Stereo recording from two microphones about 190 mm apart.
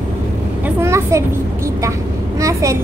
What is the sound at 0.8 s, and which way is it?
Speech, 15° right (ahead or behind).